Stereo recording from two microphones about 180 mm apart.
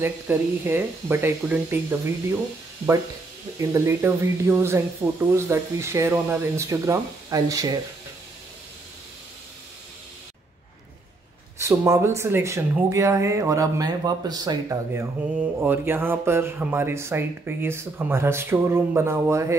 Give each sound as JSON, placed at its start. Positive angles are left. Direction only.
{"t": 0.0, "sound": "speech", "side_deg": -15}
{"t": 3.5, "sound": "speech", "side_deg": -15}
{"t": 11.5, "sound": "speech", "side_deg": -15}